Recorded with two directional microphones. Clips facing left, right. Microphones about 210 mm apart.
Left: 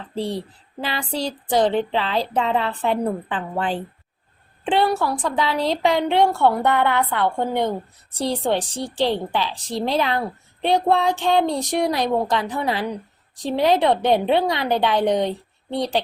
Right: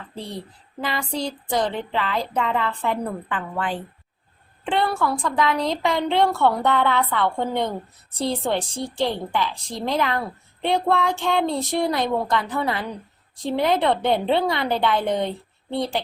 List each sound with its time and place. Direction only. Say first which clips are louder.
1.2 s a woman's voice: left 6 dB; 20° left (ahead or behind)
3.5 s speech: left 3 dB; 30° left (ahead or behind)
4.6 s a woman's voice: left 3 dB; 20° left (ahead or behind)